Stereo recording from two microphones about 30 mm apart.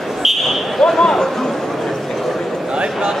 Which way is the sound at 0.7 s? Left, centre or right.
Centre.